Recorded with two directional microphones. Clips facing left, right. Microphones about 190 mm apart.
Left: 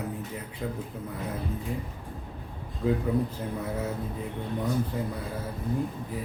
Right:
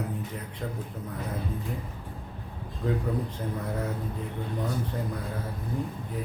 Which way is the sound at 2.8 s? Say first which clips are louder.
Left 3 dB; 10° left (ahead or behind).